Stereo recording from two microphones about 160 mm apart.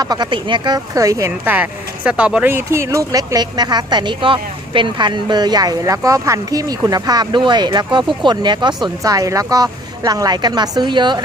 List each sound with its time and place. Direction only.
0.0 s speech: 25° right (ahead or behind)